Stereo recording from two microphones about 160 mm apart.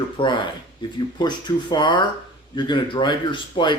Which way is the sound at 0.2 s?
30° left (ahead or behind).